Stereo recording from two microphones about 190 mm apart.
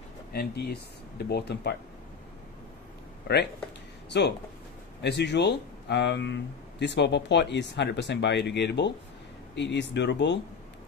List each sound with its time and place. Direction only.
0.3 s speech: 55° left (ahead or behind)
3.3 s speech: 60° left (ahead or behind)
5.0 s speech: 60° left (ahead or behind)